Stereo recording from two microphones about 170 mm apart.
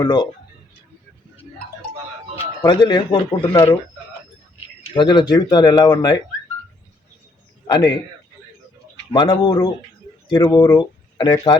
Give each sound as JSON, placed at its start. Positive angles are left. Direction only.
{"t": 0.0, "sound": "speech", "side_deg": 25}
{"t": 2.6, "sound": "speech", "side_deg": 25}
{"t": 4.9, "sound": "speech", "side_deg": 25}
{"t": 7.7, "sound": "speech", "side_deg": 25}
{"t": 9.1, "sound": "speech", "side_deg": 25}